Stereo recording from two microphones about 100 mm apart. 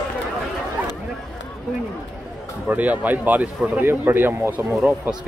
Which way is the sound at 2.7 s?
15° right (ahead or behind).